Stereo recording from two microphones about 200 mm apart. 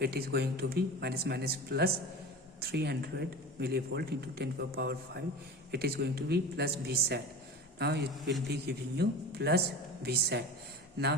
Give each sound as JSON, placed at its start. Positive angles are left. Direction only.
{"t": 0.0, "sound": "a man's voice", "side_deg": -50}